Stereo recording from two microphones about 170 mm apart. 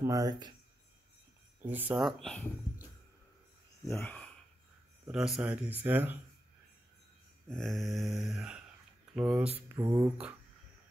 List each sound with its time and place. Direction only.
0.0 s speech: 20° right (ahead or behind)
1.6 s mantra: 10° right (ahead or behind)
3.8 s speech: 5° left (ahead or behind); by 6.1 s 10° right (ahead or behind)
7.4 s mantra: centre (ahead or behind)
9.8 s speech: 20° right (ahead or behind)